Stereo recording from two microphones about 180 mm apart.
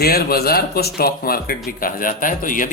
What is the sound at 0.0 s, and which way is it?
A man's voice, 60° left (ahead or behind).